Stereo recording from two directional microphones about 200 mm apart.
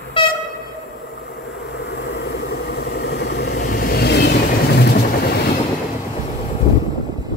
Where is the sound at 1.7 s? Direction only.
55° left (ahead or behind).